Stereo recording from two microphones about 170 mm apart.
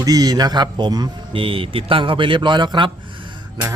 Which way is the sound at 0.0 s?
20° right (ahead or behind).